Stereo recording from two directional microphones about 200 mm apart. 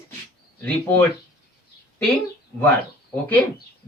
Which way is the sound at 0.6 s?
10° left (ahead or behind).